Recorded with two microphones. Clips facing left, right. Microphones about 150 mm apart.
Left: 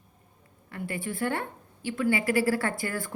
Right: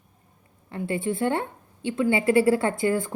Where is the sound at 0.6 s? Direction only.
25° right (ahead or behind).